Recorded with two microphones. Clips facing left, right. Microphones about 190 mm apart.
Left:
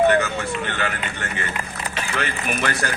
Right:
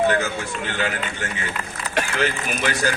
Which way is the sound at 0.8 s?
60° left (ahead or behind).